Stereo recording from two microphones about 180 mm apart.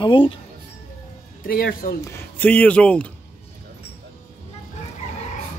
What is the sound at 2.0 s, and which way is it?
A man's voice, 10° left (ahead or behind).